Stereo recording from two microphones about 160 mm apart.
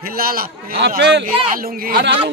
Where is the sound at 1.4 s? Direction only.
60° right (ahead or behind).